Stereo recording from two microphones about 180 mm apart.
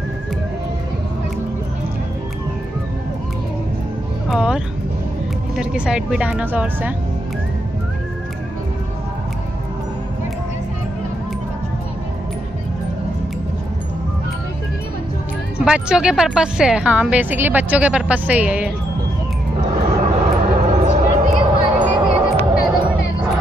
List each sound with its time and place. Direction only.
4.3 s music: 5° right (ahead or behind)
5.6 s speech: 5° right (ahead or behind)
15.6 s a woman's voice: 5° right (ahead or behind)
19.9 s a sound: 35° right (ahead or behind)